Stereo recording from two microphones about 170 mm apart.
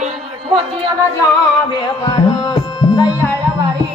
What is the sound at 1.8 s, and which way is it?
Music, 25° left (ahead or behind).